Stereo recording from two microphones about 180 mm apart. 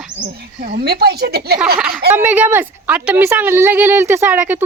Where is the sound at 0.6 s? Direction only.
60° right (ahead or behind).